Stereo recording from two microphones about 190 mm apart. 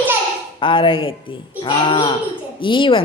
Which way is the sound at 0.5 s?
25° left (ahead or behind).